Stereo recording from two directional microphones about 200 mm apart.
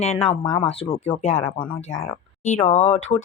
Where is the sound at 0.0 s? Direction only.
30° left (ahead or behind).